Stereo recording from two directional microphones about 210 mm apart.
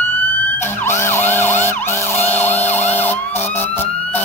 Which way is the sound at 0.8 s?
10° left (ahead or behind).